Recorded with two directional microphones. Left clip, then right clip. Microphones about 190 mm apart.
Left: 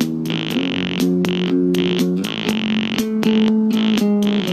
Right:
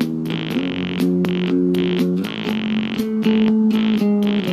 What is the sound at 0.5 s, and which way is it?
Music, 45° left (ahead or behind).